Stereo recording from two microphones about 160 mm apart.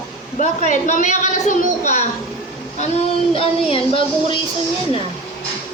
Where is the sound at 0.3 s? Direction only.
50° left (ahead or behind).